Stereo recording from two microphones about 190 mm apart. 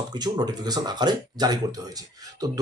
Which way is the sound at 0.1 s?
20° right (ahead or behind).